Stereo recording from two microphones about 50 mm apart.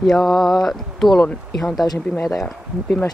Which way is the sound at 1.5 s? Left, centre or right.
Centre.